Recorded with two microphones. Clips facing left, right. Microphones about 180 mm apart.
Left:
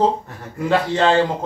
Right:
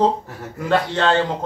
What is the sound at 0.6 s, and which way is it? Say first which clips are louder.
Speech: left 2 dB; 10° left (ahead or behind).